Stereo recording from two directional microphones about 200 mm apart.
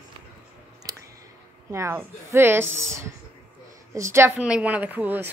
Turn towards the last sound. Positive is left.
turn(degrees=-10)  # may be behind; listen again after turning